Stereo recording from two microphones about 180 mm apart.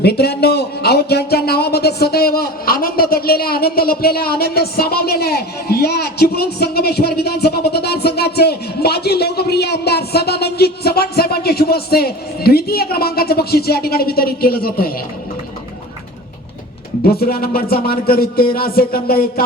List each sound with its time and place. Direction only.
0.0 s speech: 60° left (ahead or behind)
17.0 s speech: 55° left (ahead or behind)